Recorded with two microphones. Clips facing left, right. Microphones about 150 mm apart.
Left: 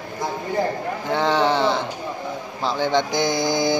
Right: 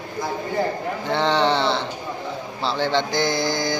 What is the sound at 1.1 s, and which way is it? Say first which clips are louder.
Speech: even; 10° left (ahead or behind).